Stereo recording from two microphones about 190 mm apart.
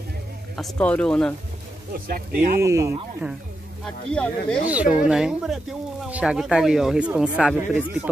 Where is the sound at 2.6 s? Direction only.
15° right (ahead or behind).